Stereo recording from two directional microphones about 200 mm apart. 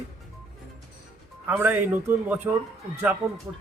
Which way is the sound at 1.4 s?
10° right (ahead or behind).